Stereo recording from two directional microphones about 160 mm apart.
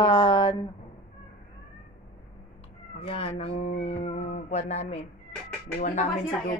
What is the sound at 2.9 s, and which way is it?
Speech, 35° left (ahead or behind).